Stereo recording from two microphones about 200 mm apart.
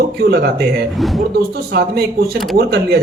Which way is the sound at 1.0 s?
Centre (ahead or behind).